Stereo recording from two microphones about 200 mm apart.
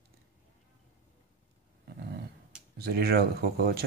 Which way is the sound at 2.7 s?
50° right (ahead or behind).